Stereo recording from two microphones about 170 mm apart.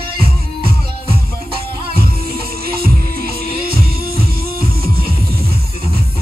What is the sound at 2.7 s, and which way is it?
Music, 60° right (ahead or behind).